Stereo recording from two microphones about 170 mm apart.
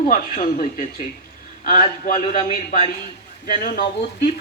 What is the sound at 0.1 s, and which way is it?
A man's voice, 55° left (ahead or behind).